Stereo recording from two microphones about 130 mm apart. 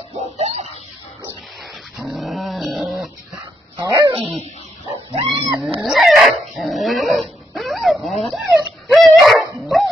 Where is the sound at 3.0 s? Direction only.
30° right (ahead or behind).